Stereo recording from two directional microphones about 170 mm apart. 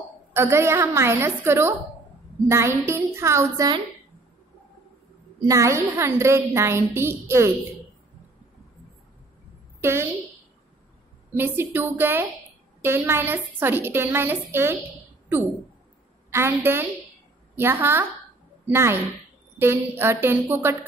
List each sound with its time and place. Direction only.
0.3 s a woman's voice: 15° right (ahead or behind)
5.4 s a woman's voice: 20° right (ahead or behind)
9.8 s a sound: 15° right (ahead or behind)
11.3 s a woman's voice: 10° right (ahead or behind)
16.3 s a woman's voice: 15° right (ahead or behind)